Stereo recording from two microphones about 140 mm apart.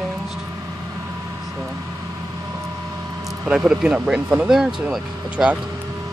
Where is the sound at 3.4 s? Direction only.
5° right (ahead or behind).